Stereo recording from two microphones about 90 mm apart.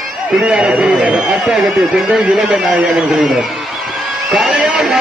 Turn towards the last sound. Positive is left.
turn(degrees=-10)  # may be behind; listen again after turning